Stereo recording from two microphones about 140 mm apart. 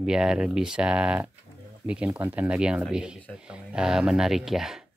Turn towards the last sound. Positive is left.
turn(degrees=-5)  # may be behind; listen again after turning